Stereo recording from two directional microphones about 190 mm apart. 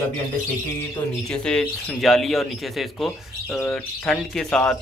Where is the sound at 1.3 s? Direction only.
5° left (ahead or behind).